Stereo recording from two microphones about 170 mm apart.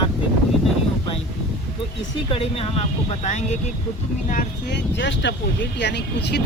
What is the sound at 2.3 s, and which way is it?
Speech, 35° left (ahead or behind).